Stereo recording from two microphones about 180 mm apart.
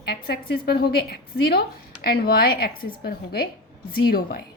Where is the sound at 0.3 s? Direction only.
60° left (ahead or behind).